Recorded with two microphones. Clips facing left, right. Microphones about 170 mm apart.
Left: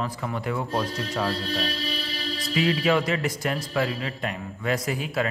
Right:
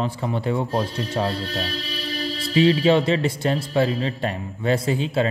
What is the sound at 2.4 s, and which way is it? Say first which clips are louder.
Speech: right 6 dB; 30° right (ahead or behind).